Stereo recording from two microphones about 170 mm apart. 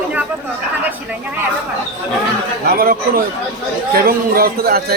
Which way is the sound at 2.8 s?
60° right (ahead or behind).